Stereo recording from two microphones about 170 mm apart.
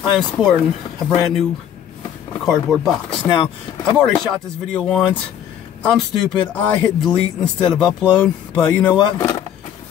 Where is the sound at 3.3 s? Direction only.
25° left (ahead or behind).